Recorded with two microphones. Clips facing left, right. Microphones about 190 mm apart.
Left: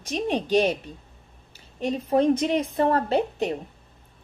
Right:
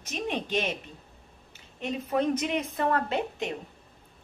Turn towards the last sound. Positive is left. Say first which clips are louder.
# left 7 dB
turn(degrees=35)  # may be behind; listen again after turning